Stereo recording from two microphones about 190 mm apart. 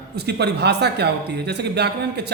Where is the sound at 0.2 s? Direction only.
60° right (ahead or behind).